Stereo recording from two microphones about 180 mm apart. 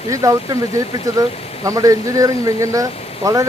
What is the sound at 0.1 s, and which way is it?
Speech, 20° right (ahead or behind).